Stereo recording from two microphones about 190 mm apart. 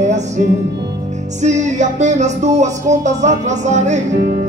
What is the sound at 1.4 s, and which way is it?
Music, 40° right (ahead or behind).